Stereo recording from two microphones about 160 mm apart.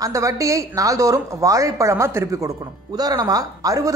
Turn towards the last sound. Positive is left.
turn(degrees=-20)  # may be behind; listen again after turning